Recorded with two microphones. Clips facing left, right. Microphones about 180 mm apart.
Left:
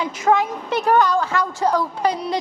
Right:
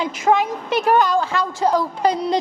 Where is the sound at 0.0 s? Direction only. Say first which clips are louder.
Right 1 dB; 20° right (ahead or behind).